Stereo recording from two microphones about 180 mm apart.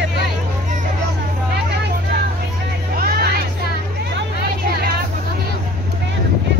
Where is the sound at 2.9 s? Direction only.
55° right (ahead or behind).